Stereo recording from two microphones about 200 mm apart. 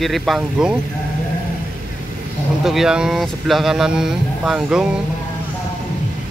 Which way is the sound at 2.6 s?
Centre (ahead or behind).